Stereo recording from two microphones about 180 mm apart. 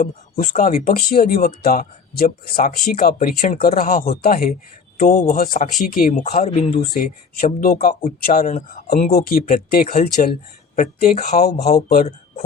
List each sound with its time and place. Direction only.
0.0 s speech: 40° left (ahead or behind)
7.4 s speech: 50° left (ahead or behind)
11.3 s speech: 60° left (ahead or behind)